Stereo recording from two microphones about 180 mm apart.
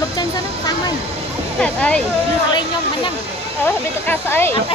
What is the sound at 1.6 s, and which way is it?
Speech, 5° left (ahead or behind).